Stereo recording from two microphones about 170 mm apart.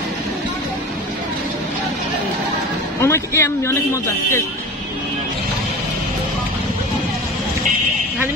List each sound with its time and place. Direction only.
3.0 s a man's voice: 15° left (ahead or behind)